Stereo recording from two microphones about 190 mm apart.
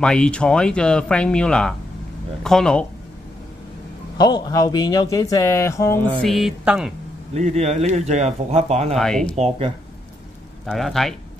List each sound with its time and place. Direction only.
0.0 s speech: 5° left (ahead or behind)
4.2 s a man's voice: 20° left (ahead or behind)
6.2 s speech: centre (ahead or behind)
7.3 s speech: 35° right (ahead or behind)
8.9 s speech: 5° left (ahead or behind)
10.6 s speech: centre (ahead or behind)